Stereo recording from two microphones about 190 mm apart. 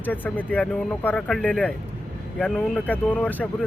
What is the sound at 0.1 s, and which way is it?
Speech, 10° left (ahead or behind).